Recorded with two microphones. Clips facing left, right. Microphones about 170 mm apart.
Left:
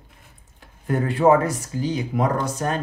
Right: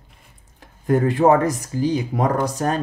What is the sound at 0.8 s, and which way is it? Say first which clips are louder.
Speech: right 2 dB; 40° right (ahead or behind).